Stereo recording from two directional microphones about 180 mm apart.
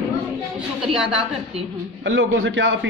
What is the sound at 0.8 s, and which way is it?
Speech, 5° right (ahead or behind).